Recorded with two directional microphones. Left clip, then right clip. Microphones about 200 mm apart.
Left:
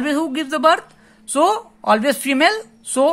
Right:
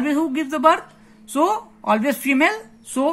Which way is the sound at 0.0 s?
45° left (ahead or behind).